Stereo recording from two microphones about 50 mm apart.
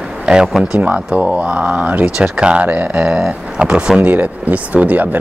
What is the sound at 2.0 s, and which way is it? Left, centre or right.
Speech, centre.